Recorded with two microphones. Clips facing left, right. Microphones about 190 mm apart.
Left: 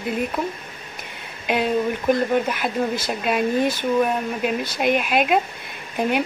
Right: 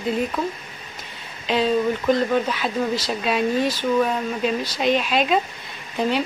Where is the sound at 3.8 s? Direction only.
15° left (ahead or behind).